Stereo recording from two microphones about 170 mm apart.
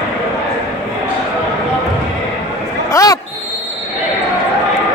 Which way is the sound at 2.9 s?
20° left (ahead or behind).